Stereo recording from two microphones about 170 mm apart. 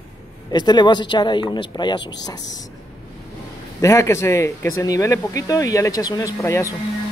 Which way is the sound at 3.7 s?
15° left (ahead or behind).